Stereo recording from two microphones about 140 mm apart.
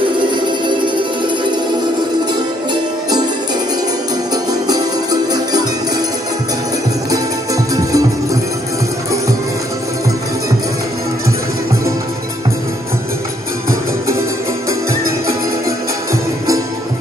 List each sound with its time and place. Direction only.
0.7 s music: 35° right (ahead or behind)
4.5 s music: 25° right (ahead or behind)
7.1 s music: 25° right (ahead or behind)
14.7 s music: 20° right (ahead or behind)